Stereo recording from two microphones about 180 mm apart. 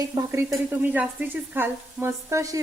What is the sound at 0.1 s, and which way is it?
A woman's voice, 15° right (ahead or behind).